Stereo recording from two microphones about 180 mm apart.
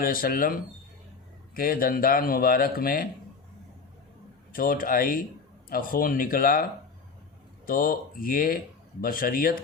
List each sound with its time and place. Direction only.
0.0 s speech: 55° left (ahead or behind)
4.5 s speech: 50° left (ahead or behind)
7.7 s speech: 50° left (ahead or behind)